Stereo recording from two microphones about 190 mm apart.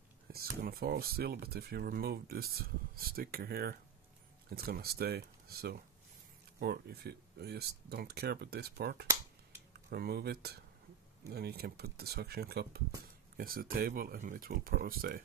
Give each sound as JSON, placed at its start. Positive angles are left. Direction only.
{"t": 0.3, "sound": "speech", "side_deg": -50}